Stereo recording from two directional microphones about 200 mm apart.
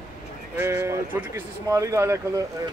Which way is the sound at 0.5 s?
15° right (ahead or behind).